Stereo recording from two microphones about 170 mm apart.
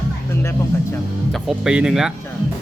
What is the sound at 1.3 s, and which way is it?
Speech, centre (ahead or behind).